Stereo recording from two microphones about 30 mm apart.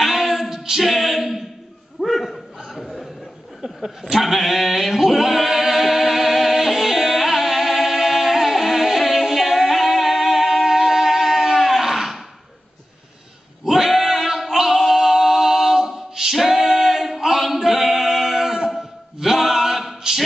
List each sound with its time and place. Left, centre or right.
0.0 s a sound: centre
2.8 s chuckle: centre
4.0 s singing: centre
13.7 s male singing: centre
14.4 s a capella: centre
17.6 s singing: centre
19.1 s music: centre
20.1 s a sound: right